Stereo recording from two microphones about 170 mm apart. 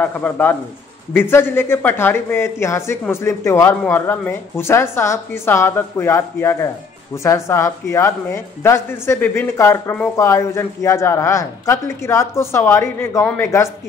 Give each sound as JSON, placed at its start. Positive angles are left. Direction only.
{"t": 0.0, "sound": "a man's voice", "side_deg": 10}